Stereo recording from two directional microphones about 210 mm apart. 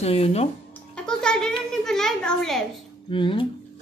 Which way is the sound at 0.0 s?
30° left (ahead or behind).